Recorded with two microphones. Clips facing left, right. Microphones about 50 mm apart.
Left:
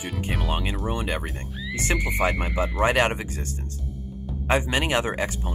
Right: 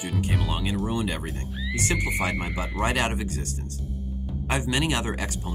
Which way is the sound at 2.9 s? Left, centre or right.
Left.